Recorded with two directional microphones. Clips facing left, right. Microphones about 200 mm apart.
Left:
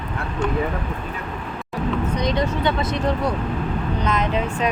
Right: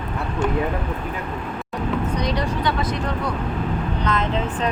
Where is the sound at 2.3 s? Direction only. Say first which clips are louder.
Left 2 dB; 25° left (ahead or behind).